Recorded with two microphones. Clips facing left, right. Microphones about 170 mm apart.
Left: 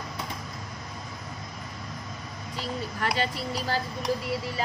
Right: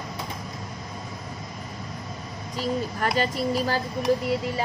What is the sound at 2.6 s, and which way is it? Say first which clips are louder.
A child's voice: right 6 dB; 45° right (ahead or behind).